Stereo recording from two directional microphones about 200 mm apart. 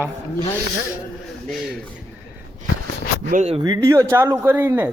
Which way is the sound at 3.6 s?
15° right (ahead or behind).